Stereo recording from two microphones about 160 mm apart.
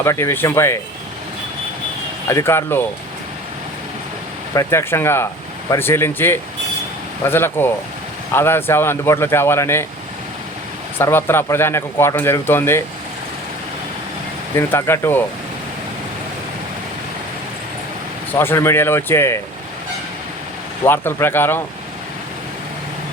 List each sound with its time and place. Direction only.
0.0 s a man's voice: 15° left (ahead or behind)
2.3 s a man's voice: 15° left (ahead or behind)
4.5 s a man's voice: 15° left (ahead or behind)
10.9 s a man's voice: 15° left (ahead or behind)
14.5 s a man's voice: 15° left (ahead or behind)
18.3 s a man's voice: 15° left (ahead or behind)
20.8 s a man's voice: 15° left (ahead or behind)